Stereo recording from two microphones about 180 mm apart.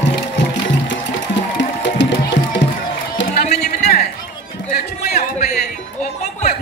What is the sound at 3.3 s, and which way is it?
Run, 40° left (ahead or behind).